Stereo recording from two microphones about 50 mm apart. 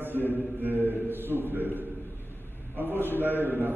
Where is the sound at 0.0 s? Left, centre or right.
Right.